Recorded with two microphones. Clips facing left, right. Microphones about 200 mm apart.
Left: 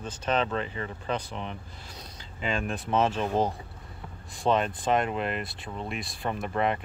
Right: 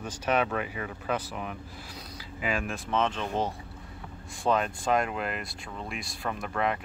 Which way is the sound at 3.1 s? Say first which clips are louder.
Left 4 dB; 40° left (ahead or behind).